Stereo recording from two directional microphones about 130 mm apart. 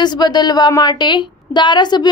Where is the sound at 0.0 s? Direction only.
35° left (ahead or behind).